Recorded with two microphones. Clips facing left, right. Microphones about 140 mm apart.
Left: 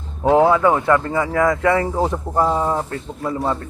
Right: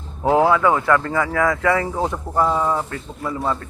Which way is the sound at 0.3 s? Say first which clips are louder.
Left 2 dB; 25° left (ahead or behind).